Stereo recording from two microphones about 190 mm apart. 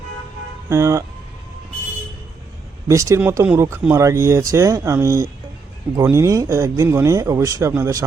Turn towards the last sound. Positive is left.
turn(degrees=-15)  # may be behind; listen again after turning